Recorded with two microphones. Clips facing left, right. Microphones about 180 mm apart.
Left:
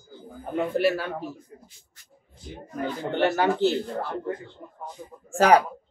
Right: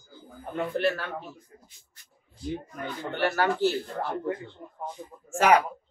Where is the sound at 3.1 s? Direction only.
20° left (ahead or behind).